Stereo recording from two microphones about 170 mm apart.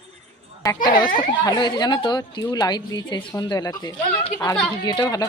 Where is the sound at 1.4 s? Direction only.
25° left (ahead or behind).